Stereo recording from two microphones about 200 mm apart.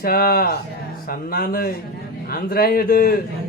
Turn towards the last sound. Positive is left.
turn(degrees=45)  # may be behind; listen again after turning